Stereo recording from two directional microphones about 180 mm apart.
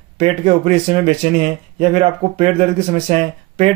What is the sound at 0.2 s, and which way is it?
Speech, 35° right (ahead or behind).